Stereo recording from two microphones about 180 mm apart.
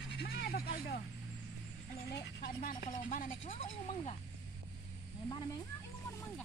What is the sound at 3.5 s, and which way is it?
Speech, 30° left (ahead or behind).